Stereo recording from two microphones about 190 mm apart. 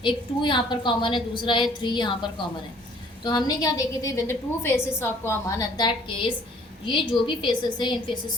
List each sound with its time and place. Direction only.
0.0 s a woman's voice: 25° left (ahead or behind)